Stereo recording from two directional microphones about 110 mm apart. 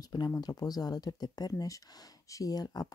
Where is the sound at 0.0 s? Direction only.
40° left (ahead or behind).